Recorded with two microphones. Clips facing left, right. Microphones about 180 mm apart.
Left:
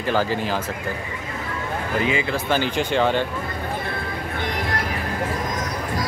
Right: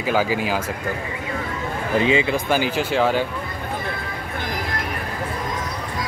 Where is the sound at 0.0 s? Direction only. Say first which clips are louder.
Right 1 dB; 10° right (ahead or behind).